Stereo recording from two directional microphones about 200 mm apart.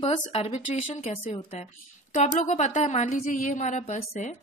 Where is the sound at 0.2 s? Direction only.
30° left (ahead or behind).